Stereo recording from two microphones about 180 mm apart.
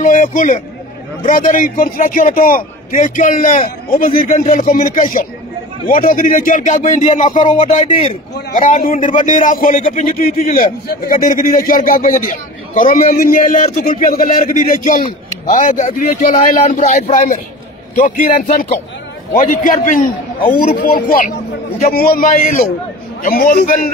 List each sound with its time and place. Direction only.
0.0 s a man's voice: 45° left (ahead or behind)